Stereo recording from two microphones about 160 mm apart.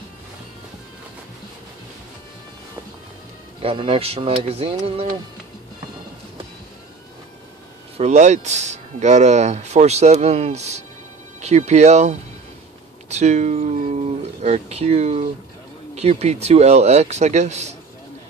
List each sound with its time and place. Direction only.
3.6 s speech: 35° right (ahead or behind)
8.0 s speech: 45° right (ahead or behind)